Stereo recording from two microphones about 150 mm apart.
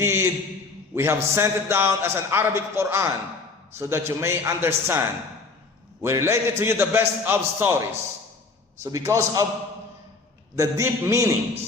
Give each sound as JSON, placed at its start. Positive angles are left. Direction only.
{"t": 0.0, "sound": "a man's voice", "side_deg": -15}
{"t": 10.5, "sound": "a man's voice", "side_deg": -20}